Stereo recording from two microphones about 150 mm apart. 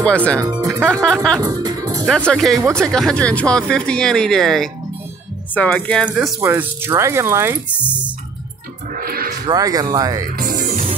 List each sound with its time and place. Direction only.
0.0 s speech: 10° left (ahead or behind)
0.4 s speech: 25° right (ahead or behind)
1.0 s speech: 5° left (ahead or behind)
1.4 s music: 25° right (ahead or behind)
2.2 s speech: centre (ahead or behind)
6.0 s speech: 10° right (ahead or behind)
8.9 s music: 75° right (ahead or behind)
9.5 s speech: 25° right (ahead or behind)
10.2 s speech: 75° right (ahead or behind)
10.7 s music: 55° right (ahead or behind)